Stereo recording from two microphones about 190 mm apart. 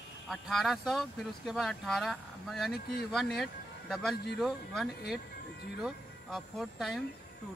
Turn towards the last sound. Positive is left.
turn(degrees=0)  # may be behind; listen again after turning